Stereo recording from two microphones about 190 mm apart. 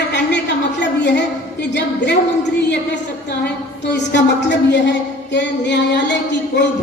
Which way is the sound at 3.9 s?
65° left (ahead or behind).